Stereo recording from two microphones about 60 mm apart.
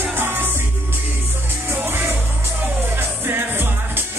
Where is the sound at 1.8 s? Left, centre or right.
Right.